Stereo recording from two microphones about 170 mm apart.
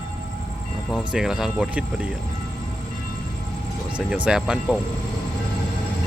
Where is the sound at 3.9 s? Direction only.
5° right (ahead or behind).